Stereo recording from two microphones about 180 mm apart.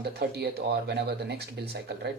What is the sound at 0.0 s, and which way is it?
Speech, 65° right (ahead or behind).